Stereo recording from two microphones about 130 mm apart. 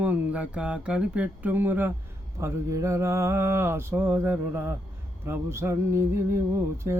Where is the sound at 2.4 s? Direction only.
20° right (ahead or behind).